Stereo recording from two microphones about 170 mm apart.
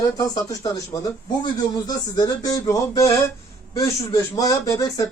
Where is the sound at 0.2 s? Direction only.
20° left (ahead or behind).